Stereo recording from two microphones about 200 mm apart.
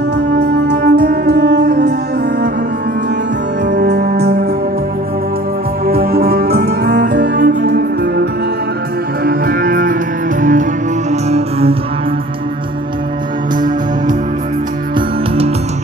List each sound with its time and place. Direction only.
0.3 s music: 55° right (ahead or behind)
3.6 s music: 55° right (ahead or behind)
5.9 s music: 50° right (ahead or behind); by 11.7 s 30° right (ahead or behind)
15.0 s music: 30° right (ahead or behind)